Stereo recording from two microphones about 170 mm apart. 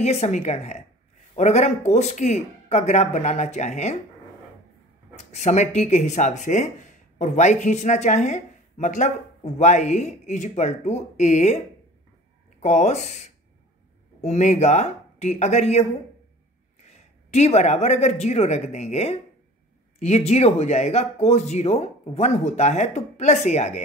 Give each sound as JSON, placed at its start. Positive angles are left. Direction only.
{"t": 0.0, "sound": "speech", "side_deg": 40}
{"t": 5.1, "sound": "speech", "side_deg": 40}